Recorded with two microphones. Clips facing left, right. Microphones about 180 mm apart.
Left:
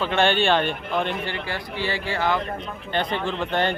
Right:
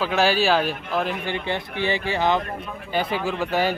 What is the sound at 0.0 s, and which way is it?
A man's voice, 5° right (ahead or behind).